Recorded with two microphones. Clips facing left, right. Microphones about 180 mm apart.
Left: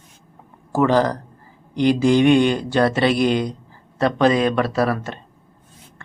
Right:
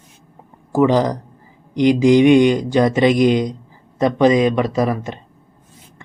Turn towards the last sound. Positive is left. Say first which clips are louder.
# right 1 dB
turn(degrees=-15)  # may be behind; listen again after turning